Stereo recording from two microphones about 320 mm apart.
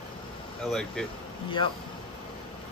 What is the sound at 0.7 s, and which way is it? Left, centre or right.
Speech, centre.